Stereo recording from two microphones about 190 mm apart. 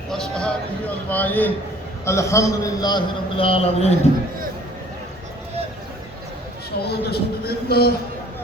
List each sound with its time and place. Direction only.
0.1 s a man's voice: 5° left (ahead or behind); by 3.9 s 30° left (ahead or behind)
6.8 s speech: 55° left (ahead or behind)